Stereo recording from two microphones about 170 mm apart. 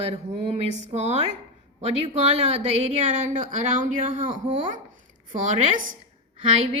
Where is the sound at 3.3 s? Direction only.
50° right (ahead or behind).